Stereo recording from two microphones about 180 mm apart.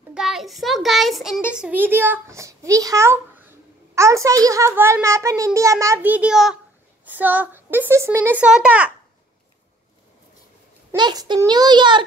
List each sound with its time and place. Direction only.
0.1 s a child's voice: centre (ahead or behind)
11.0 s a child's voice: 25° right (ahead or behind)